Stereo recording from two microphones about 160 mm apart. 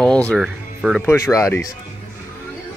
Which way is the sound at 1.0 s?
15° left (ahead or behind).